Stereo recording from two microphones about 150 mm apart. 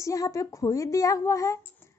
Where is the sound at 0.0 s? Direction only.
20° left (ahead or behind).